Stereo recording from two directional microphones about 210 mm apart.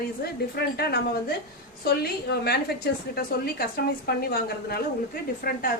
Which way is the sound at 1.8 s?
50° left (ahead or behind).